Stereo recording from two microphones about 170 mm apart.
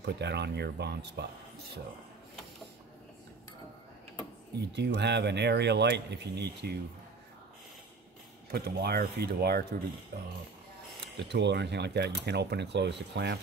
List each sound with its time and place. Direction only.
0.0 s speech: 80° right
4.6 s speech: 85° right
8.5 s speech: 65° right (ahead or behind)
11.1 s speech: 90° right